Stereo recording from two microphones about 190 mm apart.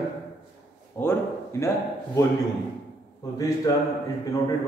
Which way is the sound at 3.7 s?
15° left (ahead or behind).